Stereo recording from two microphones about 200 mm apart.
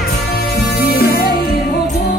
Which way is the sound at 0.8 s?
50° left (ahead or behind).